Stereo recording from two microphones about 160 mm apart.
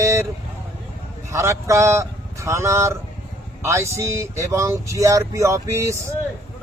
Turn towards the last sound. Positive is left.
turn(degrees=-20)  # may be behind; listen again after turning